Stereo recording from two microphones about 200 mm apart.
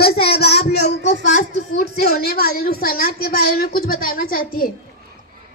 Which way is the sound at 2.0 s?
50° left (ahead or behind).